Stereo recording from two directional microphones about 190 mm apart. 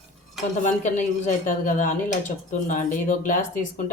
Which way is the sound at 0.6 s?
40° left (ahead or behind).